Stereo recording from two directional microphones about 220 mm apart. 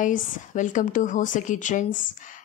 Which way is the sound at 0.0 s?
35° left (ahead or behind).